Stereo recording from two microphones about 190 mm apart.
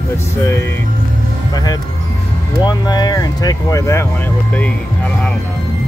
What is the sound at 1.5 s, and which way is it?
Speech, 20° left (ahead or behind).